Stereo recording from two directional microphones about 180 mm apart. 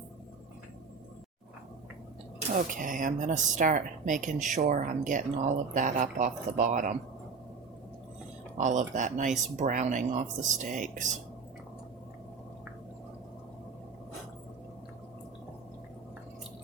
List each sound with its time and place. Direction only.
2.6 s speech: 50° right (ahead or behind)
8.5 s speech: 40° right (ahead or behind)